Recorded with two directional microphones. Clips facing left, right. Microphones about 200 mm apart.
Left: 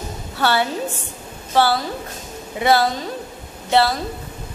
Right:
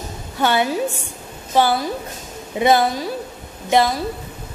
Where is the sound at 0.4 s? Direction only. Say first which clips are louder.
Right 2 dB; 15° right (ahead or behind).